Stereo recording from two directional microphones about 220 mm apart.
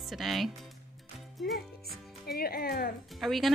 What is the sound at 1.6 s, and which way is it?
Speech, 45° left (ahead or behind).